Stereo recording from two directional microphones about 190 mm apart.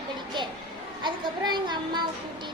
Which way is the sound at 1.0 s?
25° right (ahead or behind).